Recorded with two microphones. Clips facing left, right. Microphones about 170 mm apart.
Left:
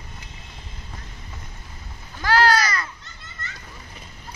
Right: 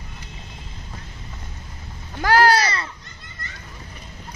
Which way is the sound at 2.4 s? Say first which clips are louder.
Right 2 dB; 30° right (ahead or behind).